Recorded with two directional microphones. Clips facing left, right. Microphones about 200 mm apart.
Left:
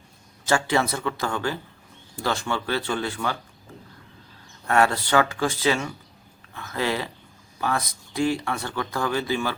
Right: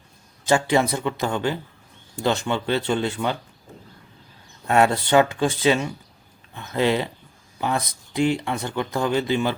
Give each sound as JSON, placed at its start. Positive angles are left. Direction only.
{"t": 0.4, "sound": "speech", "side_deg": -20}
{"t": 4.6, "sound": "speech", "side_deg": -20}